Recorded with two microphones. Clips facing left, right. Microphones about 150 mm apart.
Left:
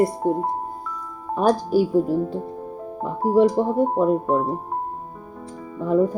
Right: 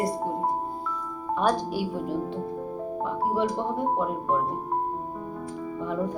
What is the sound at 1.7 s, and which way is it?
Speech, 40° left (ahead or behind).